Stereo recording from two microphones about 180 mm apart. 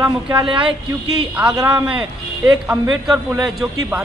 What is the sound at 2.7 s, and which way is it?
Speech, centre (ahead or behind).